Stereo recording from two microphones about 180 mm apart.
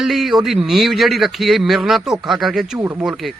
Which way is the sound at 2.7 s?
15° right (ahead or behind).